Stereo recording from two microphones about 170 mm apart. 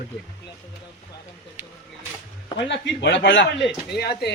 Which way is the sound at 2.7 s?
90° left.